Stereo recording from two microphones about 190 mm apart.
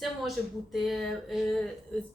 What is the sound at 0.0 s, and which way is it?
A woman's voice, centre (ahead or behind).